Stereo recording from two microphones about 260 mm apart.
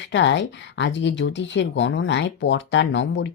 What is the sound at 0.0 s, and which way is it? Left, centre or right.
Speech, left.